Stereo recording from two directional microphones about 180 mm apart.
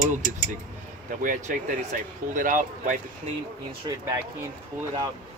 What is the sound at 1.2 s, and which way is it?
Speech, 45° right (ahead or behind).